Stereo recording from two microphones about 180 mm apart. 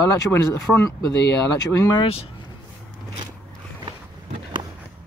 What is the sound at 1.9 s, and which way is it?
Speech, 30° left (ahead or behind).